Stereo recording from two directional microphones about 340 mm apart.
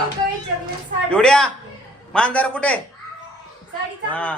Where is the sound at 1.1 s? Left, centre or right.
Centre.